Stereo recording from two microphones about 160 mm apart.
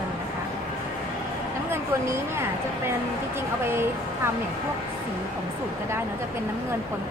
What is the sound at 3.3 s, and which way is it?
Speech, 15° right (ahead or behind).